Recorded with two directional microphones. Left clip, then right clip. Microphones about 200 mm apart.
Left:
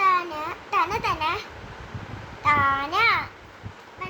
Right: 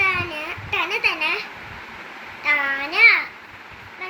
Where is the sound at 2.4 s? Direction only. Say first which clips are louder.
Even; 15° left (ahead or behind).